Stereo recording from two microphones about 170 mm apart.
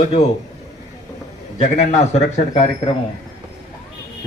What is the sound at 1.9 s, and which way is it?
Speech, 45° left (ahead or behind).